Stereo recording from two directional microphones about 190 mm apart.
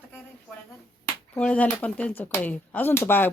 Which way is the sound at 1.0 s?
5° left (ahead or behind).